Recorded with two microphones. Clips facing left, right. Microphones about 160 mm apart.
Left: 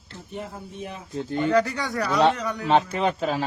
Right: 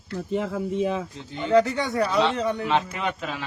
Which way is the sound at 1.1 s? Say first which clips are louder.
Left 7 dB; 50° left (ahead or behind).